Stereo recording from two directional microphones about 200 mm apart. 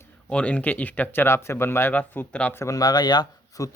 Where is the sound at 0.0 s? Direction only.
5° left (ahead or behind).